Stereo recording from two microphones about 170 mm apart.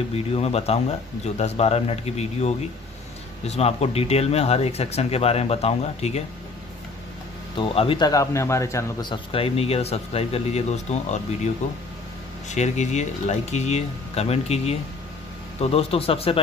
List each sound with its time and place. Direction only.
0.1 s speech: 35° left (ahead or behind)
7.5 s speech: 30° left (ahead or behind)
9.1 s speech: 35° left (ahead or behind)